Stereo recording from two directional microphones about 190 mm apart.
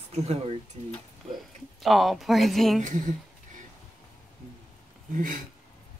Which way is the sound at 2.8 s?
45° right (ahead or behind).